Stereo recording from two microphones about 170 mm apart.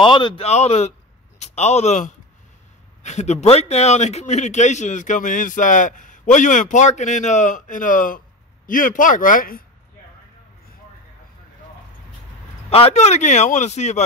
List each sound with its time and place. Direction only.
0.0 s a man's voice: 30° left (ahead or behind)
0.5 s a man's voice: 40° left (ahead or behind)
12.6 s speech: 35° left (ahead or behind)